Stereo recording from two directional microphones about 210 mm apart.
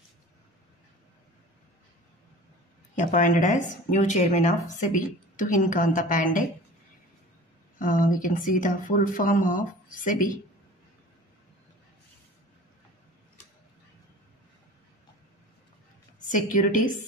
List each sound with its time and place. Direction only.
3.0 s speech: 35° left (ahead or behind)
7.8 s speech: 40° left (ahead or behind)
16.3 s speech: 40° left (ahead or behind)